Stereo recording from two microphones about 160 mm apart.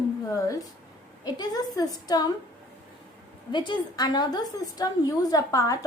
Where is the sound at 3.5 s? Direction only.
30° left (ahead or behind).